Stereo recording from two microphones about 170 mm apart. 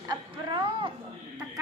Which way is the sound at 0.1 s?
30° right (ahead or behind).